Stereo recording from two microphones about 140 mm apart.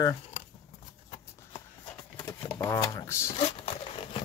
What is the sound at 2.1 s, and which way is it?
Speech, 20° left (ahead or behind).